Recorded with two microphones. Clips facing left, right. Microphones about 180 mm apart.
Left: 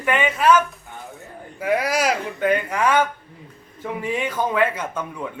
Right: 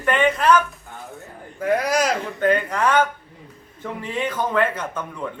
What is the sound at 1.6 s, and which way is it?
A man's voice, 5° left (ahead or behind).